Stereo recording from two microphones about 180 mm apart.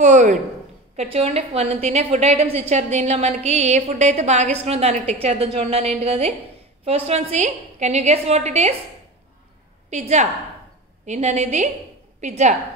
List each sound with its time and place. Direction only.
0.0 s a sound: 45° right (ahead or behind)
0.9 s a woman's voice: 35° right (ahead or behind)
9.8 s a woman's voice: 40° right (ahead or behind)